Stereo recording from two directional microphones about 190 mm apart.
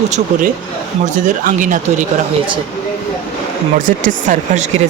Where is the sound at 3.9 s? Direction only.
45° right (ahead or behind).